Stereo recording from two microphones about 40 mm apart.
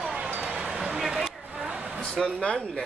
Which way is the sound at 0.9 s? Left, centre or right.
Centre.